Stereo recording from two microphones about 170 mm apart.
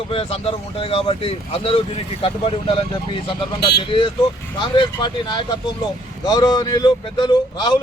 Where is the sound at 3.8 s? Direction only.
30° left (ahead or behind).